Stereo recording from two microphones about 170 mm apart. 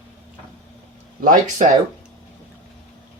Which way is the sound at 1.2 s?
50° right (ahead or behind).